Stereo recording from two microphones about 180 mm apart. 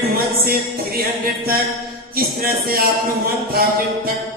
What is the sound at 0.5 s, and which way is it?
Music, 55° right (ahead or behind).